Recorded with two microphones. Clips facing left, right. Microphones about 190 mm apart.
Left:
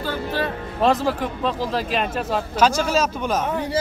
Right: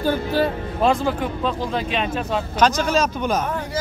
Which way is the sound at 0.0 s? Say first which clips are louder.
Right 5 dB; 15° right (ahead or behind).